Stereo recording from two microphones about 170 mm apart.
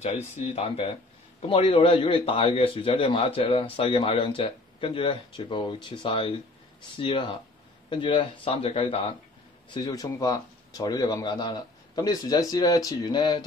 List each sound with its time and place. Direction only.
0.0 s a man's voice: 40° left (ahead or behind)
9.8 s speech: 20° left (ahead or behind)